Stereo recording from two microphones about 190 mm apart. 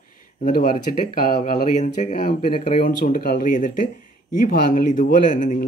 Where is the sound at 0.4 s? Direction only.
45° left (ahead or behind).